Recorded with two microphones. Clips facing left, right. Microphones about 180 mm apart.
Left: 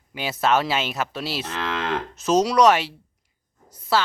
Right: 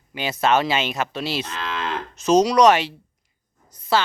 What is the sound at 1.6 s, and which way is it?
Moo, 70° left (ahead or behind).